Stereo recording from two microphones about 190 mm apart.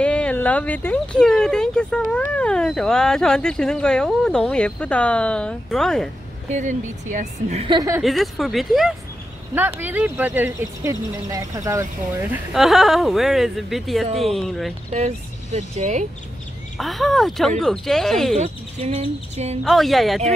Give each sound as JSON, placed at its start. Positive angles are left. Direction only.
{"t": 0.0, "sound": "speech", "side_deg": 5}
{"t": 6.5, "sound": "speech", "side_deg": -40}
{"t": 7.6, "sound": "a woman's voice", "side_deg": -20}
{"t": 8.0, "sound": "speech", "side_deg": 0}
{"t": 9.6, "sound": "speech", "side_deg": -10}
{"t": 12.5, "sound": "speech", "side_deg": 0}
{"t": 14.9, "sound": "speech", "side_deg": -35}
{"t": 16.7, "sound": "speech", "side_deg": 0}
{"t": 18.4, "sound": "speech", "side_deg": -35}
{"t": 19.6, "sound": "speech", "side_deg": 0}